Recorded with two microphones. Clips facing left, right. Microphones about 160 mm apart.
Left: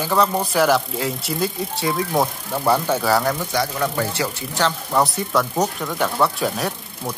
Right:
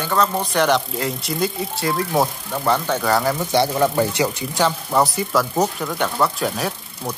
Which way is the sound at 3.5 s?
30° right (ahead or behind).